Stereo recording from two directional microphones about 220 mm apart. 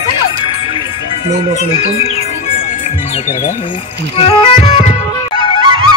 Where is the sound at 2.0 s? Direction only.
30° left (ahead or behind).